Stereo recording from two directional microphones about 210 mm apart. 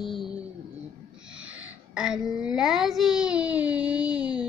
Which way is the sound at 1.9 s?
Centre (ahead or behind).